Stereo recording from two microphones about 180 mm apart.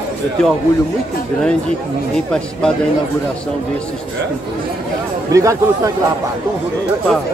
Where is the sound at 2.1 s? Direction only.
5° left (ahead or behind).